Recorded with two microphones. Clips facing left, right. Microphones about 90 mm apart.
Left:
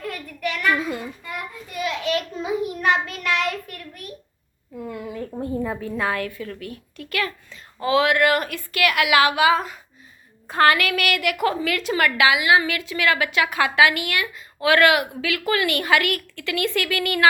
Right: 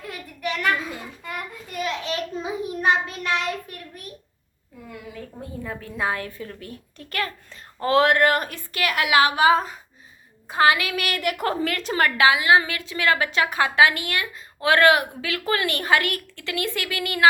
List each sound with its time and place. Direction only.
0.0 s a sound: 20° right (ahead or behind)
1.7 s child singing: 30° right (ahead or behind)
6.0 s a woman's voice: 25° right (ahead or behind)
10.5 s a woman's voice: 15° right (ahead or behind)